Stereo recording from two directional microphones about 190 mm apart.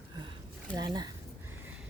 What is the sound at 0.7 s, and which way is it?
Speech, 20° right (ahead or behind).